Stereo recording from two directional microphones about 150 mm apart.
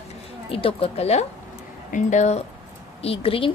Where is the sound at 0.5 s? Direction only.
40° left (ahead or behind).